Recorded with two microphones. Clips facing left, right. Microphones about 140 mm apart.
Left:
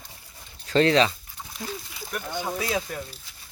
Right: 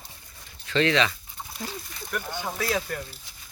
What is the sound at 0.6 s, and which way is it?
Speech, 40° left (ahead or behind).